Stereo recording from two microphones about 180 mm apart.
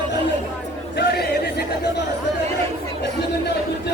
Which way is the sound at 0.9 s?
65° left (ahead or behind).